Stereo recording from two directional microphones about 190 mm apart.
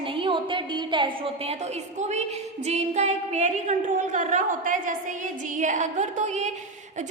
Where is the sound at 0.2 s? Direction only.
25° right (ahead or behind).